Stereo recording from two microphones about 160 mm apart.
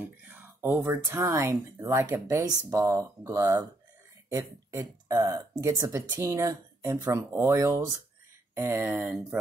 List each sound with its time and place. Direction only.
0.2 s speech: 10° right (ahead or behind)